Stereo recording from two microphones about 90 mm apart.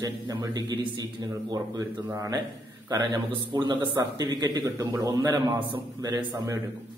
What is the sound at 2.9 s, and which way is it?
Speech, 45° right (ahead or behind).